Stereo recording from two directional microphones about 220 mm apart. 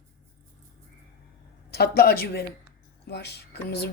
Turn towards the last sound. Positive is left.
turn(degrees=45)  # may be behind; listen again after turning